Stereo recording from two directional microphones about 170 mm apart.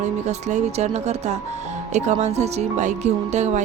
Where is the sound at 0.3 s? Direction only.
40° right (ahead or behind).